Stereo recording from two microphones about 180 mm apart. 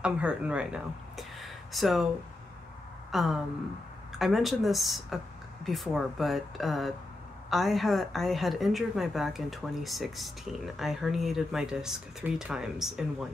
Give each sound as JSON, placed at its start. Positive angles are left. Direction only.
{"t": 0.0, "sound": "speech", "side_deg": -5}
{"t": 3.1, "sound": "a sound", "side_deg": 0}
{"t": 4.2, "sound": "a woman's voice", "side_deg": 0}